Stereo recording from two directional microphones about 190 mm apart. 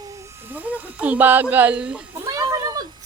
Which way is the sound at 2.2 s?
20° right (ahead or behind).